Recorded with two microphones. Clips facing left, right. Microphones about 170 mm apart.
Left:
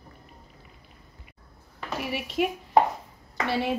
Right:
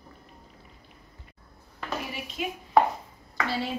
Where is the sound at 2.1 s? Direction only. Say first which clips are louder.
Left 8 dB; 75° left (ahead or behind).